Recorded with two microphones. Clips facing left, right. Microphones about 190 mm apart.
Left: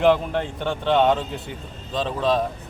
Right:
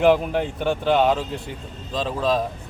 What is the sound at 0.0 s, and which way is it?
Speech, 5° right (ahead or behind).